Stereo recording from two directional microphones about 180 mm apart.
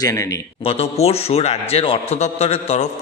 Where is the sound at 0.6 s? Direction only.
35° left (ahead or behind).